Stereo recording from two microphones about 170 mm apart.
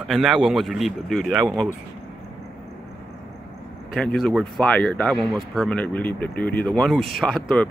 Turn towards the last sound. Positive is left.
turn(degrees=5)  # may be behind; listen again after turning